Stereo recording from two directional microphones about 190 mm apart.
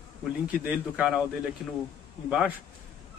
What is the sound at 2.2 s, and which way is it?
Speech, 5° right (ahead or behind).